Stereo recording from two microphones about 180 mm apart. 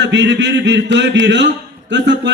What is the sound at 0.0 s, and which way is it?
A man's voice, 85° right.